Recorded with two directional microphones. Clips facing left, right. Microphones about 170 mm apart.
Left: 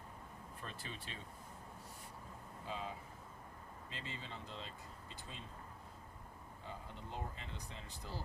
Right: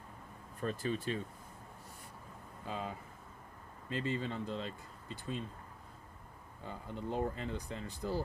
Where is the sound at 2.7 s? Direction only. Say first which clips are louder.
Right 4 dB; 55° right (ahead or behind).